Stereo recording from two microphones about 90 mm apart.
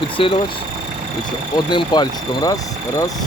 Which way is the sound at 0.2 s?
90° left.